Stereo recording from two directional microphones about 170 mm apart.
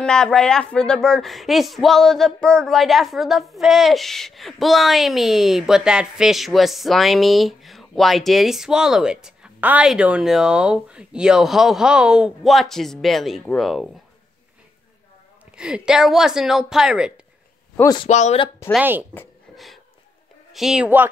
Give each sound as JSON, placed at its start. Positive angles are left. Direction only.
{"t": 0.0, "sound": "speech", "side_deg": 5}
{"t": 15.5, "sound": "speech", "side_deg": -5}
{"t": 18.0, "sound": "speech", "side_deg": 40}
{"t": 18.8, "sound": "speech", "side_deg": -10}
{"t": 19.5, "sound": "a sound", "side_deg": 0}
{"t": 20.5, "sound": "speech", "side_deg": -5}